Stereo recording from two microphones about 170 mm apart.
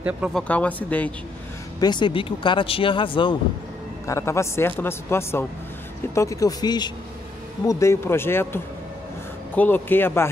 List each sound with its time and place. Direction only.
0.3 s a man's voice: 5° left (ahead or behind)
1.8 s speech: 25° left (ahead or behind)
4.1 s a man's voice: 15° left (ahead or behind)
9.6 s a man's voice: 10° left (ahead or behind)